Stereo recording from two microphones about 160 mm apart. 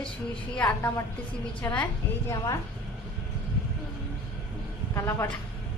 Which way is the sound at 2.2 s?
20° left (ahead or behind).